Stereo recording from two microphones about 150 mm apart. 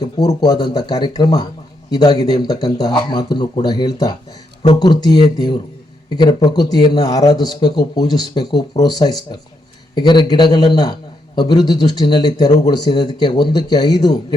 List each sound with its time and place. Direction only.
0.3 s speech: 30° left (ahead or behind)